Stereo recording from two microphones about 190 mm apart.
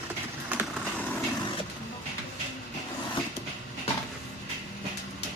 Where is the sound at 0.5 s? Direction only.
10° right (ahead or behind).